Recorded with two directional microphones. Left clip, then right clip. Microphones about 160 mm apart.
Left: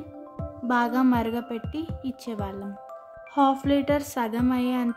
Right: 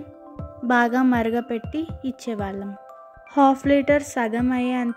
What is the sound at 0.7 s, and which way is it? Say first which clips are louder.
Speech: right 4 dB; 30° right (ahead or behind).